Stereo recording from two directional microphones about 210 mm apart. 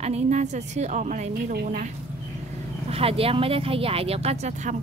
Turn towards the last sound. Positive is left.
turn(degrees=-35)  # may be behind; listen again after turning